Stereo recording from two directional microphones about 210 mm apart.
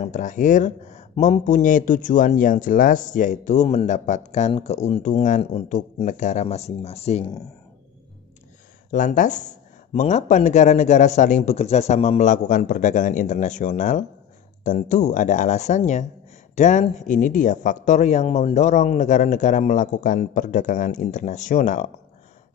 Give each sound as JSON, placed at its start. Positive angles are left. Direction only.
{"t": 0.0, "sound": "speech", "side_deg": 35}
{"t": 8.9, "sound": "speech", "side_deg": 35}